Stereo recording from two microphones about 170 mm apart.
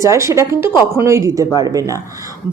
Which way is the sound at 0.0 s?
15° right (ahead or behind).